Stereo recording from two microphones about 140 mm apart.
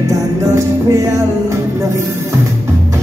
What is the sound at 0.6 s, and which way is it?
Music, 20° right (ahead or behind).